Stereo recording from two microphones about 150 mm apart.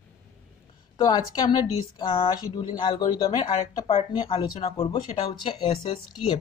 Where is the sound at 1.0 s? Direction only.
30° left (ahead or behind).